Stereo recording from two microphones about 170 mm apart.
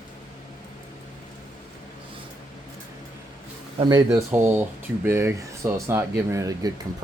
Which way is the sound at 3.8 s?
20° right (ahead or behind).